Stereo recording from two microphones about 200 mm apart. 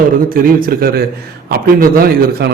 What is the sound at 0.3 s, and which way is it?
A man's voice, 45° right (ahead or behind).